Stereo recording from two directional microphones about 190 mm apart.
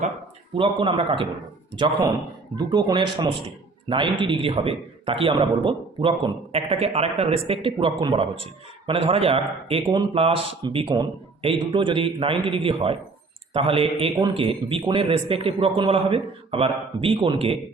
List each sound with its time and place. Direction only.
0.8 s speech: 25° right (ahead or behind)